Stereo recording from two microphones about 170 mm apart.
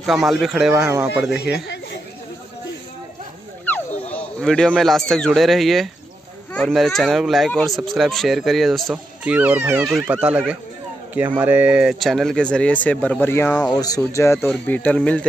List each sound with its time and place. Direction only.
0.0 s speech: centre (ahead or behind)
0.8 s speech: 15° right (ahead or behind)
3.7 s speech: 5° left (ahead or behind)
13.7 s speech: 20° left (ahead or behind)